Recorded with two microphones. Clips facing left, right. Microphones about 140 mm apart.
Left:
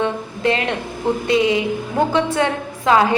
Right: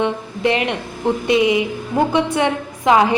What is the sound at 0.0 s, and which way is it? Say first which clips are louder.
A woman's voice: right 1 dB; 20° right (ahead or behind).